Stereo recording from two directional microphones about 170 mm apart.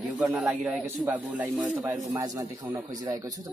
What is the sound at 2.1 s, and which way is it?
Speech, 20° right (ahead or behind).